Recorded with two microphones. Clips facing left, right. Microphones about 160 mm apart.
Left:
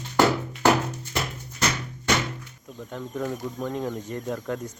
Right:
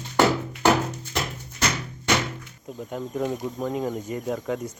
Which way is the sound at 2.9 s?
10° right (ahead or behind).